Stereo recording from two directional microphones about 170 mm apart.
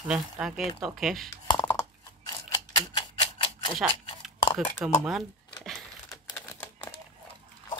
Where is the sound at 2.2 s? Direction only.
25° left (ahead or behind).